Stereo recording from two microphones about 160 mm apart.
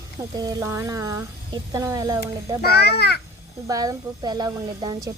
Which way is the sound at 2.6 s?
80° left.